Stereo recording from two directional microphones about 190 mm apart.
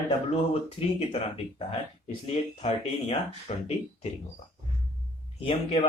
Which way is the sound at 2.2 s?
30° left (ahead or behind).